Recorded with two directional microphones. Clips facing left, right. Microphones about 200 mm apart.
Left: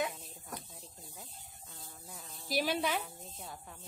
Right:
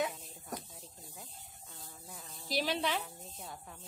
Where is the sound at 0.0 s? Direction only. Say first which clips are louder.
Right 1 dB; centre (ahead or behind).